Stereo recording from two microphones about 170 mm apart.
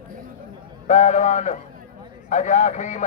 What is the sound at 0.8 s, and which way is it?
A man's voice, 45° left (ahead or behind).